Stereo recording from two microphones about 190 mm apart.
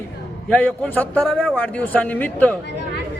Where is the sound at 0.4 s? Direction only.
5° left (ahead or behind).